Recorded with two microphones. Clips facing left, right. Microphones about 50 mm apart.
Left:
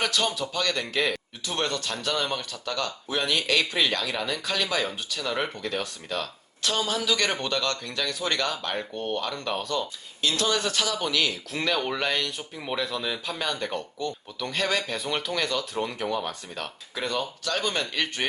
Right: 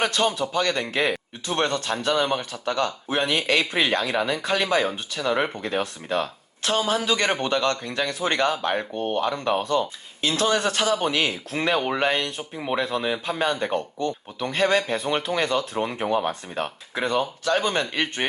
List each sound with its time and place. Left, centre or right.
0.0 s speech: right
5.5 s speech: right